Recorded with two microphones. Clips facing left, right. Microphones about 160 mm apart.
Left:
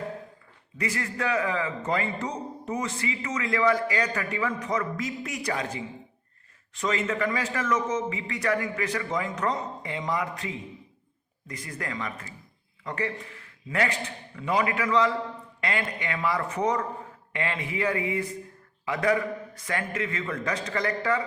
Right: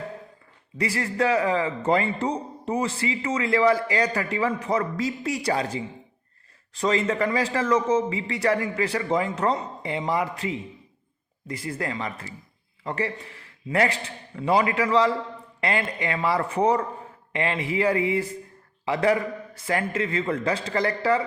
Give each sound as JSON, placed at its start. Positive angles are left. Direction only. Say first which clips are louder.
{"t": 0.8, "sound": "a man's voice", "louder": "right 6 dB", "side_deg": -30}